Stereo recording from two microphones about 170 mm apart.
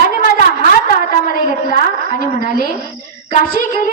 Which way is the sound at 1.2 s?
50° left (ahead or behind).